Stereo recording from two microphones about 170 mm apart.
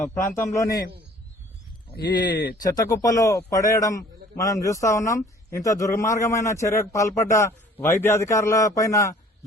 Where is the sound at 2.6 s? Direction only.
20° left (ahead or behind).